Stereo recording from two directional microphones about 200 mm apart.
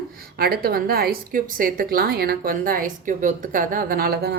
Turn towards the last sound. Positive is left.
turn(degrees=-50)  # may be behind; listen again after turning